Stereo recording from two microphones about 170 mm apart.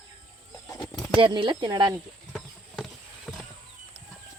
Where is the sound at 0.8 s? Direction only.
5° left (ahead or behind).